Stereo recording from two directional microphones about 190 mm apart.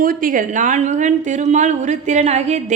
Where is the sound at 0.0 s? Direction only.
45° right (ahead or behind).